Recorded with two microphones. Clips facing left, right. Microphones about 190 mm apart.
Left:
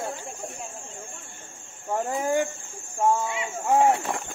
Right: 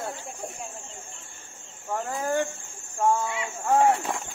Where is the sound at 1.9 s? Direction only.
20° left (ahead or behind).